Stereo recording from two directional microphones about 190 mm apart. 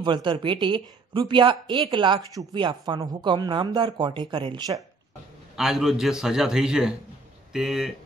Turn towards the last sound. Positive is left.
turn(degrees=0)  # may be behind; listen again after turning